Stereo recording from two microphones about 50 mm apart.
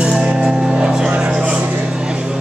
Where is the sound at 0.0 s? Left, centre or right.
Centre.